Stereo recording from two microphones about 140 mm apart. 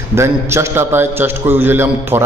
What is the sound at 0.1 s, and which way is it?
A man's voice, 20° right (ahead or behind).